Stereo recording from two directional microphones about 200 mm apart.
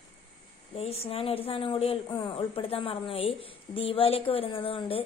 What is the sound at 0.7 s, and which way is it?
A woman's voice, 30° left (ahead or behind).